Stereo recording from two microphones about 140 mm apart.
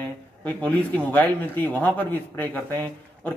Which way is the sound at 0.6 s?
10° left (ahead or behind).